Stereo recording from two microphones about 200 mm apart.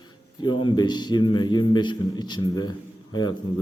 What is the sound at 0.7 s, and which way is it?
A man's voice, 20° left (ahead or behind).